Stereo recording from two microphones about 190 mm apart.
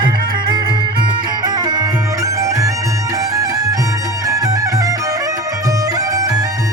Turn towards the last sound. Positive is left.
turn(degrees=-20)  # may be behind; listen again after turning